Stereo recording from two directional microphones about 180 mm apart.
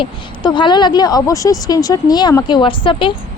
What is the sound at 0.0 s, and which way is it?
A woman's voice, 25° left (ahead or behind).